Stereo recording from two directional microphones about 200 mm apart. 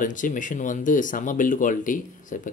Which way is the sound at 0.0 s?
40° left (ahead or behind).